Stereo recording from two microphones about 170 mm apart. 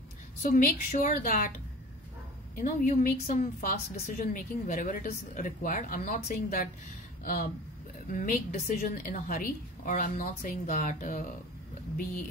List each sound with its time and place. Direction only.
0.4 s a woman's voice: 55° left (ahead or behind)
2.6 s a woman's voice: 50° left (ahead or behind)
8.1 s a woman's voice: 50° left (ahead or behind)